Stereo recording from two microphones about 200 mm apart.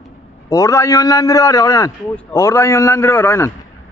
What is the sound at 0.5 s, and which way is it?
A man's voice, 15° left (ahead or behind).